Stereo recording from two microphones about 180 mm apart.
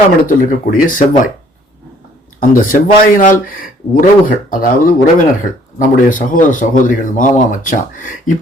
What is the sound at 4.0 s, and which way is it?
Speech, 50° left (ahead or behind).